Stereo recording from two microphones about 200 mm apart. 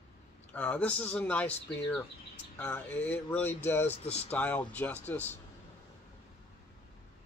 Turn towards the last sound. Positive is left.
turn(degrees=10)  # may be behind; listen again after turning